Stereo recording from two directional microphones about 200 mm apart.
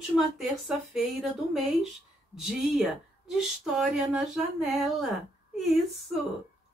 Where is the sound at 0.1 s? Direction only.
Centre (ahead or behind).